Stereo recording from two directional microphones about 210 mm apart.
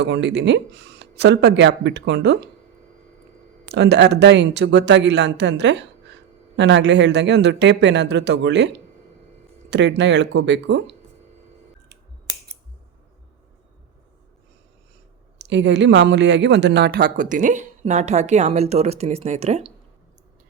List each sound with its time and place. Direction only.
0.0 s speech: 55° right (ahead or behind)
3.7 s speech: 55° right (ahead or behind)
15.4 s speech: 55° right (ahead or behind); by 19.7 s 30° right (ahead or behind)